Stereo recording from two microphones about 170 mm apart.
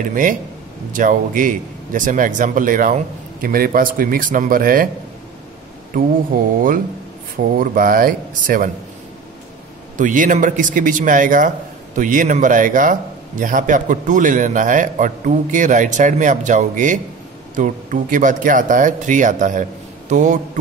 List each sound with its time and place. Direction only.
0.0 s speech: 50° right (ahead or behind)
6.3 s speech: 60° right (ahead or behind)
7.5 s speech: 55° right (ahead or behind)
9.9 s speech: 50° right (ahead or behind)
20.1 s mantra: 45° right (ahead or behind)